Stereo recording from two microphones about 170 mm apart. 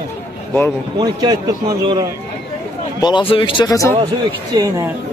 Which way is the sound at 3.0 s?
25° left (ahead or behind).